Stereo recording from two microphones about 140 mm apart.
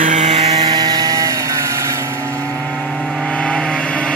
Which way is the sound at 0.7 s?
30° right (ahead or behind).